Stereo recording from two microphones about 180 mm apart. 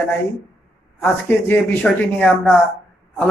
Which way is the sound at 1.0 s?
10° left (ahead or behind).